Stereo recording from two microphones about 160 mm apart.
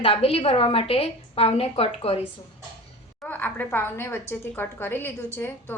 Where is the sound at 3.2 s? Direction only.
10° left (ahead or behind).